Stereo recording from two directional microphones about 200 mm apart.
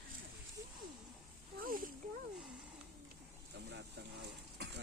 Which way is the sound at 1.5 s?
45° right (ahead or behind).